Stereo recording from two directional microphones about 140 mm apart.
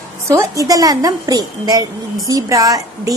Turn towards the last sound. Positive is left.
turn(degrees=-25)  # may be behind; listen again after turning